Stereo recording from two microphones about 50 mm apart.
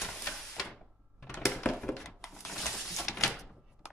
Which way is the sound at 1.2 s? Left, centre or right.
Centre.